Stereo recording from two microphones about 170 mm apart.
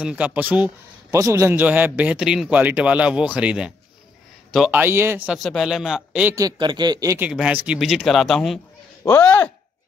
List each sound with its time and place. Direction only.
0.0 s a man's voice: 10° right (ahead or behind)
6.3 s speech: 25° right (ahead or behind)
7.2 s a man's voice: 5° right (ahead or behind); by 9.5 s 10° left (ahead or behind)